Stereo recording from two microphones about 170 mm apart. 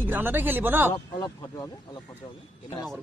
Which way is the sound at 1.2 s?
25° left (ahead or behind).